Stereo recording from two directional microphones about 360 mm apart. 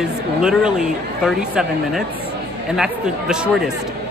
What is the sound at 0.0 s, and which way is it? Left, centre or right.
Speech, centre.